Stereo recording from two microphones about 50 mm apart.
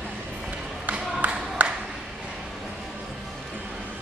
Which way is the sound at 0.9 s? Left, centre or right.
Right.